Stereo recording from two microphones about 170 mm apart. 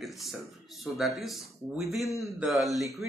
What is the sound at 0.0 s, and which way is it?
Speech, centre (ahead or behind).